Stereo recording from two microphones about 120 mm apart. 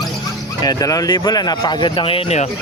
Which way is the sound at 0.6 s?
30° left (ahead or behind).